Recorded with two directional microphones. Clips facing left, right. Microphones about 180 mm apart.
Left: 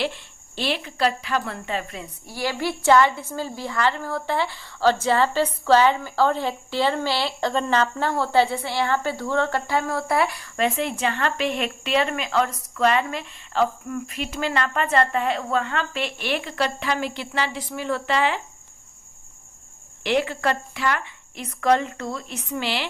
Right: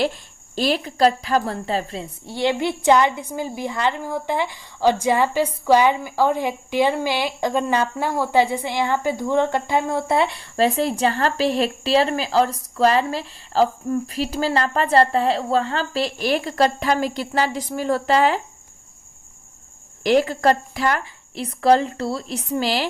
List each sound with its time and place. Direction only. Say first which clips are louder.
0.0 s a woman's voice: right 5 dB; 40° right (ahead or behind)
20.1 s a woman's voice: right 6 dB; 40° right (ahead or behind)